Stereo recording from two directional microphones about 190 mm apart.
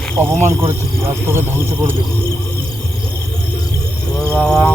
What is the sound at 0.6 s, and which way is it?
Speech, 15° right (ahead or behind).